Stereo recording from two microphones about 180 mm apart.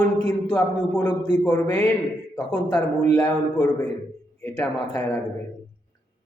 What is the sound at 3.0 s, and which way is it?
A man's voice, 10° left (ahead or behind).